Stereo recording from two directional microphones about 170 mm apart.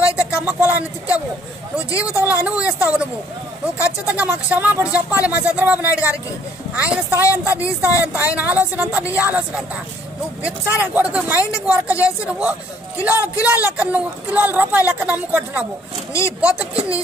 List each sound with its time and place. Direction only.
0.5 s speech: 10° right (ahead or behind)
1.9 s speech: 20° left (ahead or behind)
2.2 s speech: 10° right (ahead or behind)
10.4 s speech: 10° right (ahead or behind)